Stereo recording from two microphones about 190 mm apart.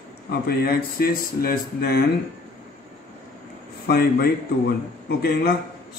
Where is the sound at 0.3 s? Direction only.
55° left (ahead or behind).